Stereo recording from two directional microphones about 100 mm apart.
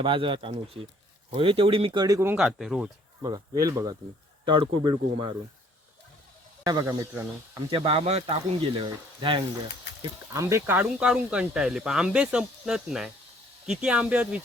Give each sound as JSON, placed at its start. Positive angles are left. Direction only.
{"t": 0.0, "sound": "speech", "side_deg": -60}
{"t": 2.0, "sound": "speech", "side_deg": -35}
{"t": 2.5, "sound": "speech", "side_deg": -5}
{"t": 3.2, "sound": "speech", "side_deg": -35}
{"t": 4.4, "sound": "speech", "side_deg": -55}
{"t": 6.8, "sound": "speech", "side_deg": -25}
{"t": 7.7, "sound": "speech", "side_deg": -65}
{"t": 10.3, "sound": "speech", "side_deg": -30}
{"t": 10.8, "sound": "speech", "side_deg": -10}